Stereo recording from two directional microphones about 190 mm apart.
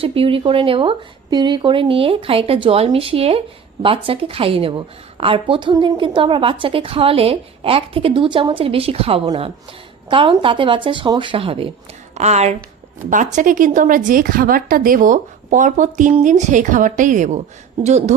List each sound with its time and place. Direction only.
0.0 s a woman's voice: 30° right (ahead or behind)